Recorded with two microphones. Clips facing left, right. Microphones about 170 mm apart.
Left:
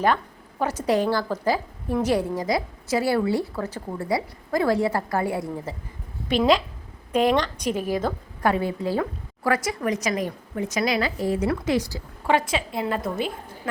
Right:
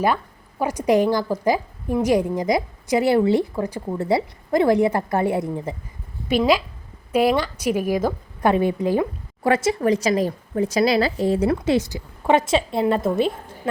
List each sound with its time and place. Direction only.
0.6 s a woman's voice: 15° right (ahead or behind)
6.2 s a woman's voice: 10° right (ahead or behind); by 13.3 s 25° right (ahead or behind)